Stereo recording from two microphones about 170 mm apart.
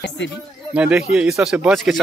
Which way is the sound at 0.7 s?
5° right (ahead or behind).